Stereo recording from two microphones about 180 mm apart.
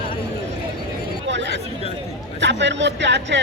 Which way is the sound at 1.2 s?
80° right.